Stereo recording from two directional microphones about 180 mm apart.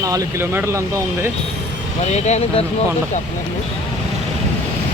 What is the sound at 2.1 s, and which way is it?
Speech, 40° left (ahead or behind).